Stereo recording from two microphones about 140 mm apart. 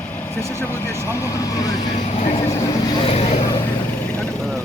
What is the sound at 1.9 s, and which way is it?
Speech, 50° left (ahead or behind).